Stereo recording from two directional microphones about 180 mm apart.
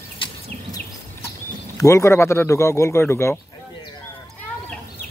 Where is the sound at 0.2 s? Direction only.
30° left (ahead or behind).